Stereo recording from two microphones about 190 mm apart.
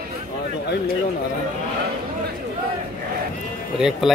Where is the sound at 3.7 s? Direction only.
5° right (ahead or behind).